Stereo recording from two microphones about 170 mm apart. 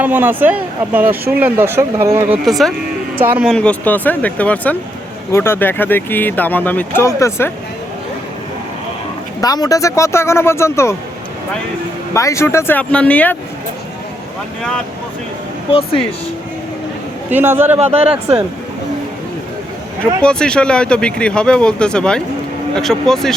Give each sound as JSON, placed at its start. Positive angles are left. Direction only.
{"t": 0.0, "sound": "speech", "side_deg": -10}
{"t": 2.4, "sound": "speech", "side_deg": 0}
{"t": 3.5, "sound": "speech", "side_deg": 10}
{"t": 9.4, "sound": "speech", "side_deg": 20}
{"t": 12.1, "sound": "speech", "side_deg": 15}
{"t": 17.2, "sound": "speech", "side_deg": -10}
{"t": 17.7, "sound": "speech", "side_deg": -40}
{"t": 20.0, "sound": "speech", "side_deg": 5}